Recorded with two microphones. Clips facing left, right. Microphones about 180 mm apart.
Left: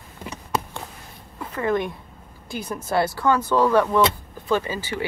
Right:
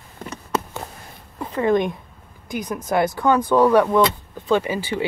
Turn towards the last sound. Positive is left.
turn(degrees=-15)  # may be behind; listen again after turning